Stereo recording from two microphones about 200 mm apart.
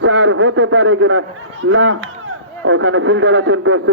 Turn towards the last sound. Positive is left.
turn(degrees=-75)  # may be behind; listen again after turning